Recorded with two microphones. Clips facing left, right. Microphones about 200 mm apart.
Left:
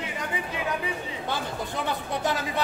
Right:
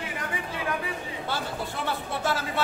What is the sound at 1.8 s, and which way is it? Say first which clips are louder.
Speech: left 1 dB; 15° left (ahead or behind).